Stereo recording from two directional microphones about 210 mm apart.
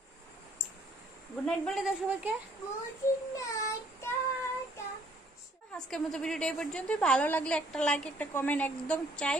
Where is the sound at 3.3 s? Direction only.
15° left (ahead or behind).